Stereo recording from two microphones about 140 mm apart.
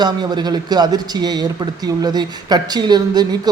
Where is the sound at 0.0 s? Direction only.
30° right (ahead or behind).